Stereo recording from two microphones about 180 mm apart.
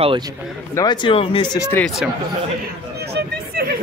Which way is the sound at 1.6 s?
10° left (ahead or behind).